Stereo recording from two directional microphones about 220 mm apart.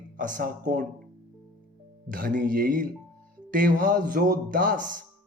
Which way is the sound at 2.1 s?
40° right (ahead or behind).